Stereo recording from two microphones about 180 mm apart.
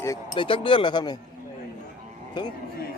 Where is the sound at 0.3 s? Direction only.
30° left (ahead or behind).